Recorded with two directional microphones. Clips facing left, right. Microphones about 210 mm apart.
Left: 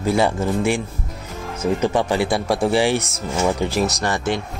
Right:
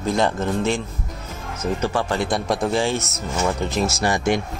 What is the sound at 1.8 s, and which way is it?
Speech, 15° left (ahead or behind).